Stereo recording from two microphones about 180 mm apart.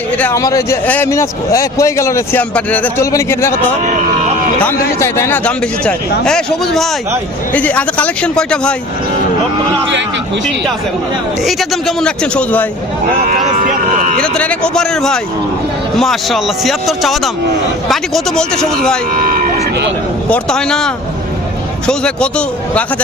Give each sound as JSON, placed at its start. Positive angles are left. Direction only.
{"t": 0.2, "sound": "a man's voice", "side_deg": 15}
{"t": 4.6, "sound": "a man's voice", "side_deg": 15}
{"t": 11.4, "sound": "speech", "side_deg": 0}
{"t": 13.2, "sound": "speech", "side_deg": -45}
{"t": 14.2, "sound": "speech", "side_deg": 5}
{"t": 19.1, "sound": "speech", "side_deg": -50}
{"t": 20.3, "sound": "speech", "side_deg": 5}